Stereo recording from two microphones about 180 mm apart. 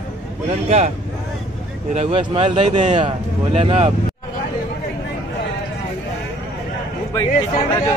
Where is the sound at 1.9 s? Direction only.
35° right (ahead or behind).